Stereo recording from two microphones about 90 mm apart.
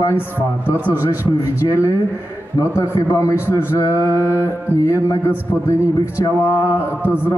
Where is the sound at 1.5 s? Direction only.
35° left (ahead or behind).